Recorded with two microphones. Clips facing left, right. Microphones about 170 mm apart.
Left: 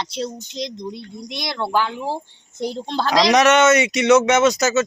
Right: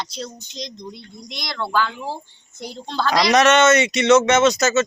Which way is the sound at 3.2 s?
15° left (ahead or behind).